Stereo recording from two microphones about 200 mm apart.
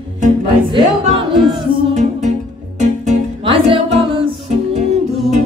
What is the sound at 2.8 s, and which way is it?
Music, 30° right (ahead or behind).